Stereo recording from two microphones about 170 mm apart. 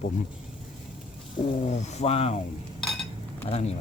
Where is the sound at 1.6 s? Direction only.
40° left (ahead or behind).